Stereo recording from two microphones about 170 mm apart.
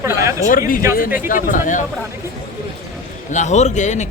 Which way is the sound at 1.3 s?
50° left (ahead or behind).